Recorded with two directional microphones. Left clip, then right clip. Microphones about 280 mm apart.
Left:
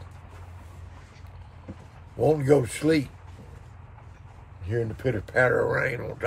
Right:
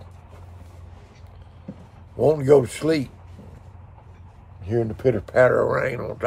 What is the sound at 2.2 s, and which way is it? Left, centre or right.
Speech, centre.